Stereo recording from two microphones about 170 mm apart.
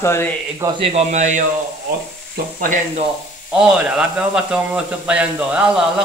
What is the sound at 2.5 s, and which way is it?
Speech, 50° right (ahead or behind).